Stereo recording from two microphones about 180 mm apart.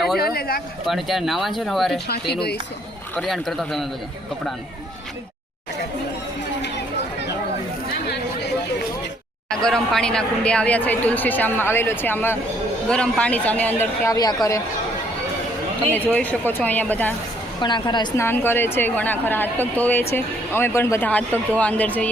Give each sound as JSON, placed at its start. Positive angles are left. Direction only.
{"t": 0.2, "sound": "a sound", "side_deg": 55}
{"t": 0.9, "sound": "speech", "side_deg": 0}
{"t": 2.0, "sound": "speech", "side_deg": 65}
{"t": 3.2, "sound": "speech", "side_deg": 0}
{"t": 9.6, "sound": "speech", "side_deg": 5}
{"t": 15.9, "sound": "speech", "side_deg": 10}
{"t": 17.6, "sound": "a woman's voice", "side_deg": 25}
{"t": 18.3, "sound": "speech", "side_deg": 10}